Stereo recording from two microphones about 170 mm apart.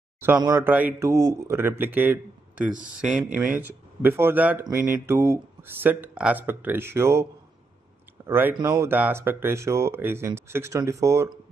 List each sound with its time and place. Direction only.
0.4 s a man's voice: 15° right (ahead or behind)
8.3 s a man's voice: 10° right (ahead or behind)